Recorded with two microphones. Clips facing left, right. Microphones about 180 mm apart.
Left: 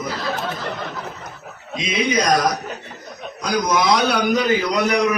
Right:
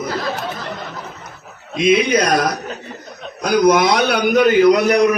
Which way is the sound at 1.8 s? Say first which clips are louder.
Right 6 dB; 60° right (ahead or behind).